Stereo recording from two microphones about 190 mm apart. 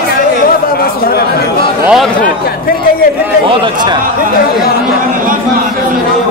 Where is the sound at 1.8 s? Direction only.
Centre (ahead or behind).